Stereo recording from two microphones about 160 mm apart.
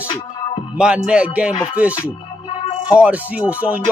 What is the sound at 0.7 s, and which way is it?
Music, 5° right (ahead or behind).